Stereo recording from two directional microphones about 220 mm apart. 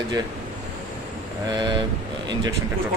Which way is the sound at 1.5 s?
20° right (ahead or behind).